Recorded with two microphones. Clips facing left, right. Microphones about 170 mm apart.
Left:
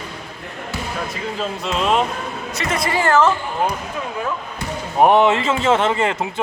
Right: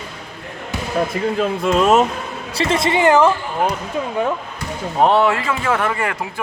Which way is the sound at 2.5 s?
30° right (ahead or behind).